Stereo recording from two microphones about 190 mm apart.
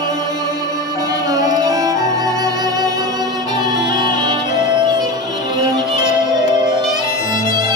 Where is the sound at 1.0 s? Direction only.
20° right (ahead or behind).